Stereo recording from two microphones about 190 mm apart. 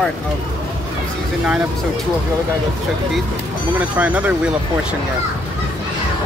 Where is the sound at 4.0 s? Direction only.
5° right (ahead or behind).